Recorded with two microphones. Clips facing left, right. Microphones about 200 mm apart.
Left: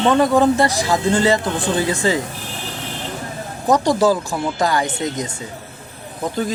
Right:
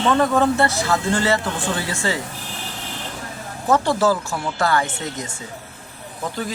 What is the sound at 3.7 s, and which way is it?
Speech, 15° left (ahead or behind).